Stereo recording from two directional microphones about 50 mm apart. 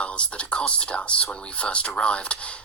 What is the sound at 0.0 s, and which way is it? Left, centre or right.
Speech, left.